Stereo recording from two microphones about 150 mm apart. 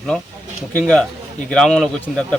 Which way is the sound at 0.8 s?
5° left (ahead or behind).